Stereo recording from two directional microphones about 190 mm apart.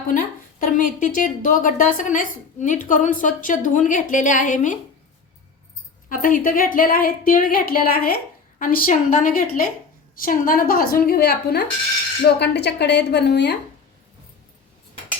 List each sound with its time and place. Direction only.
0.1 s a woman's voice: 45° left (ahead or behind)
6.1 s a woman's voice: 45° left (ahead or behind)